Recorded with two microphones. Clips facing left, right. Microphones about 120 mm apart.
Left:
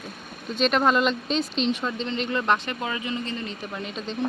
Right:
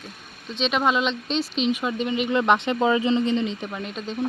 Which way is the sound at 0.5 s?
Centre (ahead or behind).